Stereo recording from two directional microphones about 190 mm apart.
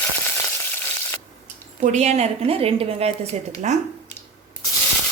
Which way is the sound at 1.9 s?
35° right (ahead or behind).